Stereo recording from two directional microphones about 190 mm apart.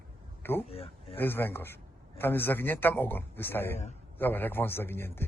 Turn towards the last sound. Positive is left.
turn(degrees=10)  # may be behind; listen again after turning